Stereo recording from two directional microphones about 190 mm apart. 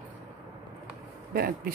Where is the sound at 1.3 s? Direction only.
50° right (ahead or behind).